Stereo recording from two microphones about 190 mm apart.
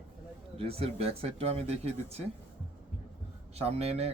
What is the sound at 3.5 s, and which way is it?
Speech, 35° right (ahead or behind).